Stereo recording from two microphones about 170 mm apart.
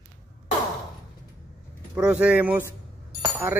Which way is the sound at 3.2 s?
20° right (ahead or behind).